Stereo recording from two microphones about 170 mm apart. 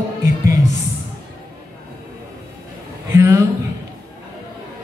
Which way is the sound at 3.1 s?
15° right (ahead or behind).